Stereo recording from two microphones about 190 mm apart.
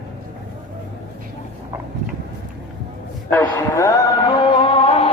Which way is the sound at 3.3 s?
10° left (ahead or behind).